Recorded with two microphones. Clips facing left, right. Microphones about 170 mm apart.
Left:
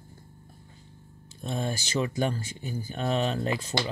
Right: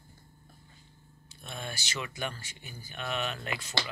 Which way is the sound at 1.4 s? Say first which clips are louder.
Left 9 dB; 35° left (ahead or behind).